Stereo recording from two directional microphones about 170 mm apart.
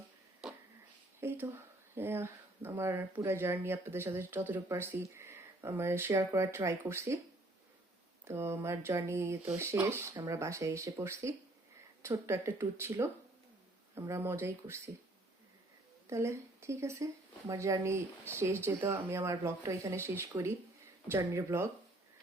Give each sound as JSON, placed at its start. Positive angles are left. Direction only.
{"t": 1.2, "sound": "speech", "side_deg": -15}
{"t": 8.2, "sound": "speech", "side_deg": -15}
{"t": 16.0, "sound": "speech", "side_deg": -15}